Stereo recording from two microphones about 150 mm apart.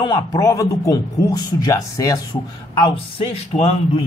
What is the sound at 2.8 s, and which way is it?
Speech, 40° left (ahead or behind).